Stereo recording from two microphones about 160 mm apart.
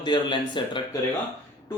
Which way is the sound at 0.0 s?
30° left (ahead or behind).